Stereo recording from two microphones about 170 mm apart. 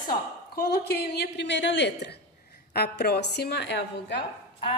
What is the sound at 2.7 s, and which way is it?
A woman's voice, 75° left (ahead or behind).